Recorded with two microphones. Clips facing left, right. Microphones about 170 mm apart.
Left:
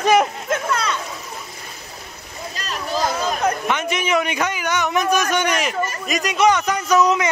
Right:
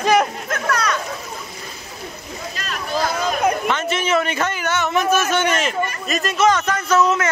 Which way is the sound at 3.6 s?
15° left (ahead or behind).